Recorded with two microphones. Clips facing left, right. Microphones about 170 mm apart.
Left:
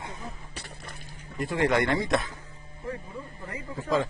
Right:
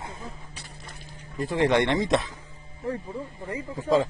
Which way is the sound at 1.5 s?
25° right (ahead or behind).